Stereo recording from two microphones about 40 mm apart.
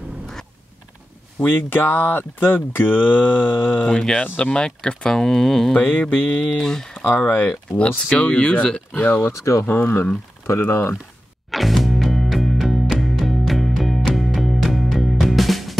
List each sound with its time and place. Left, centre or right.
1.4 s speech: left
4.2 s mantra: left
4.6 s speech: left
5.8 s mantra: left
6.6 s speech: centre
7.1 s speech: left
8.1 s speech: left
8.9 s speech: left
9.2 s speech: left
11.5 s music: centre